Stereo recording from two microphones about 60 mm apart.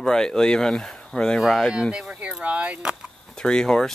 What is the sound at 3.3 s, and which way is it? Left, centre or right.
Speech, centre.